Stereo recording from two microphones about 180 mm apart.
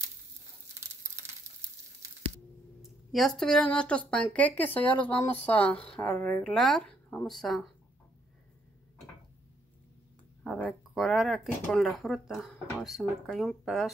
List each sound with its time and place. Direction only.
1.5 s sizzle: 15° right (ahead or behind)
2.8 s a woman's voice: centre (ahead or behind)
10.4 s speech: 5° left (ahead or behind)